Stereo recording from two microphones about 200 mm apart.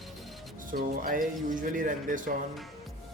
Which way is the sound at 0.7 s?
45° right (ahead or behind).